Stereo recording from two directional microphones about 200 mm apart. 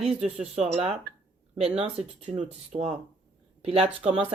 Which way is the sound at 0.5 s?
30° right (ahead or behind).